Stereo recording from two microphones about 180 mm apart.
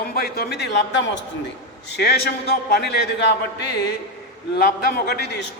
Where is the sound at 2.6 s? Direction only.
60° left (ahead or behind).